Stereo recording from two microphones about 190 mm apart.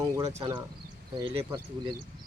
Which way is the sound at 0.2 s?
30° right (ahead or behind).